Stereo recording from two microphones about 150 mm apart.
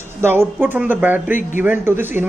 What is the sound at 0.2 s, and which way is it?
Speech, 15° right (ahead or behind).